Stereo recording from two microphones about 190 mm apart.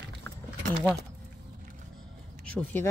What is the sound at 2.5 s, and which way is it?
Speech, 5° left (ahead or behind).